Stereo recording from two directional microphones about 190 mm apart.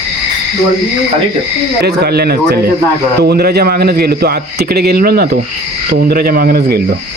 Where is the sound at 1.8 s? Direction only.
55° right (ahead or behind).